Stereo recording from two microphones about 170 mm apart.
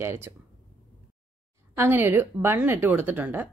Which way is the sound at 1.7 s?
10° right (ahead or behind).